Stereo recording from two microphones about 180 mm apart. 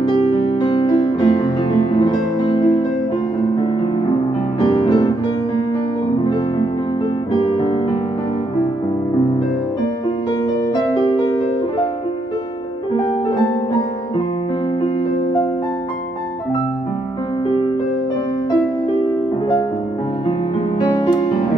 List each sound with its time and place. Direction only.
0.0 s music: 25° left (ahead or behind)
4.6 s music: 25° left (ahead or behind)
20.8 s music: 25° left (ahead or behind)